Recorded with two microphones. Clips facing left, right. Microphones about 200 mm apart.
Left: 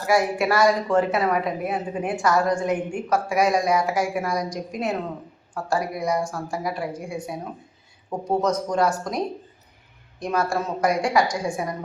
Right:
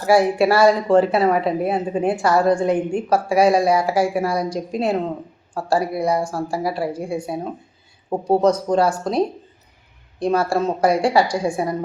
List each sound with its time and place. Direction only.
0.1 s speech: 30° right (ahead or behind)